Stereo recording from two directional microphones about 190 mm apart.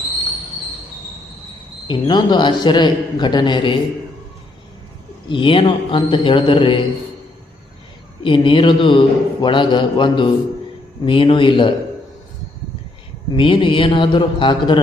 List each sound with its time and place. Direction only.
1.9 s a man's voice: 25° left (ahead or behind)
5.3 s a man's voice: 25° left (ahead or behind)
8.2 s a man's voice: 25° left (ahead or behind)
13.3 s a man's voice: 25° left (ahead or behind)